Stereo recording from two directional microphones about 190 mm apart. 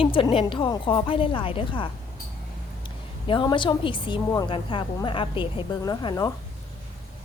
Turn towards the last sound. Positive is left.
turn(degrees=20)  # may be behind; listen again after turning